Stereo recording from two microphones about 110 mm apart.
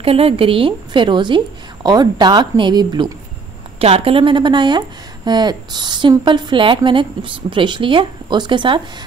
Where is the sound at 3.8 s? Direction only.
60° right (ahead or behind).